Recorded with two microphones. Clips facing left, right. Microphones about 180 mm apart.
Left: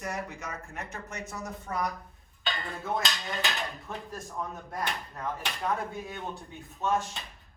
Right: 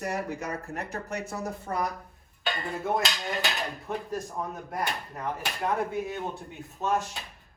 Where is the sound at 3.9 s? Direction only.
Centre (ahead or behind).